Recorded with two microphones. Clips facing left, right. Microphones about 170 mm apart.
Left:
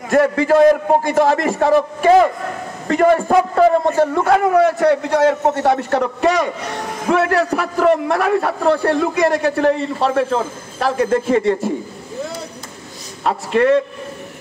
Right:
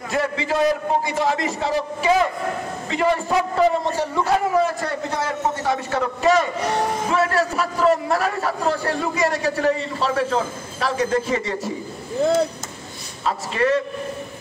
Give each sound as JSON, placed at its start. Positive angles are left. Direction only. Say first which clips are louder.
{"t": 0.1, "sound": "a man's voice", "louder": "left 10 dB", "side_deg": 50}
{"t": 13.2, "sound": "a man's voice", "louder": "left 6 dB", "side_deg": 60}